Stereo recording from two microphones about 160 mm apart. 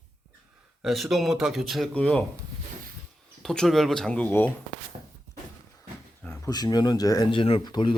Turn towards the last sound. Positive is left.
turn(degrees=30)  # may be behind; listen again after turning